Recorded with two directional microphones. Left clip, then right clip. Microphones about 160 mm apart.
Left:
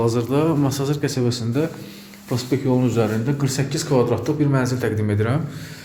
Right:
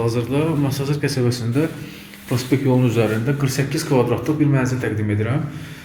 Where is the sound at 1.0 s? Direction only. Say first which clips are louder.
Right 1 dB; 15° left (ahead or behind).